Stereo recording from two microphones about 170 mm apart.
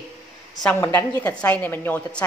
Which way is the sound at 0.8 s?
15° left (ahead or behind).